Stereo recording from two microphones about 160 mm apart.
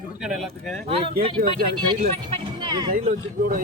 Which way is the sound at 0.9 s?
35° right (ahead or behind).